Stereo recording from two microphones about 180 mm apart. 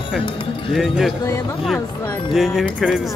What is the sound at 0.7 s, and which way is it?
Speech, centre (ahead or behind).